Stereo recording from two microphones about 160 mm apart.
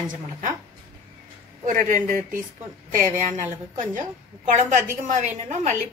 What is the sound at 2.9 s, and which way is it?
Speech, 50° right (ahead or behind).